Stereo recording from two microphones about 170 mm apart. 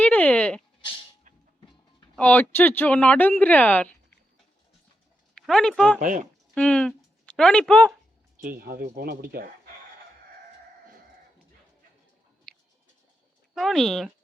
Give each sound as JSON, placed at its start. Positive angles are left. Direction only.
{"t": 0.0, "sound": "a sound", "side_deg": 10}
{"t": 2.1, "sound": "speech", "side_deg": 10}
{"t": 5.3, "sound": "speech", "side_deg": 5}
{"t": 6.0, "sound": "speech", "side_deg": -50}
{"t": 6.5, "sound": "speech", "side_deg": 5}
{"t": 8.4, "sound": "speech", "side_deg": -65}
{"t": 12.5, "sound": "a sound", "side_deg": 5}
{"t": 13.5, "sound": "speech", "side_deg": 0}